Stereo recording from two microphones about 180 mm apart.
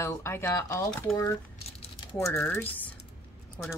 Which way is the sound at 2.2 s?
5° left (ahead or behind).